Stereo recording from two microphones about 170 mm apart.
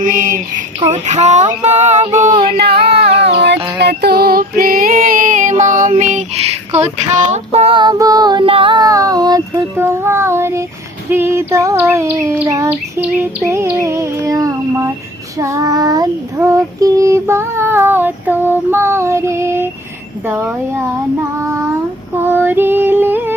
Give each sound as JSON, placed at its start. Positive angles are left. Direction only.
{"t": 0.0, "sound": "female singing", "side_deg": -50}
{"t": 2.6, "sound": "music", "side_deg": -80}
{"t": 3.8, "sound": "female singing", "side_deg": -75}
{"t": 11.1, "sound": "child singing", "side_deg": -15}
{"t": 22.1, "sound": "female singing", "side_deg": -10}